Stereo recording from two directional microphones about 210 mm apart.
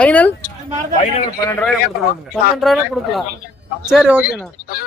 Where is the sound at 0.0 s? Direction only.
5° left (ahead or behind).